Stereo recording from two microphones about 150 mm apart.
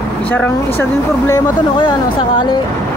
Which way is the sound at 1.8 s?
35° left (ahead or behind).